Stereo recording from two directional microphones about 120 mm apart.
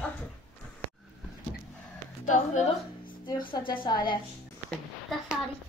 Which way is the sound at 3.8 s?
35° left (ahead or behind).